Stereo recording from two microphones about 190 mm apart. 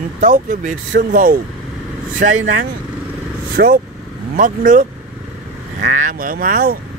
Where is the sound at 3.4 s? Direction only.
50° right (ahead or behind).